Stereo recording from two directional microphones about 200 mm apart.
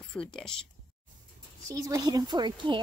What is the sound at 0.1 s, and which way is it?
Speech, 5° left (ahead or behind).